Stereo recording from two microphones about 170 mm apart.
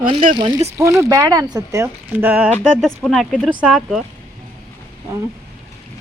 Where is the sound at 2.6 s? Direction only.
Centre (ahead or behind).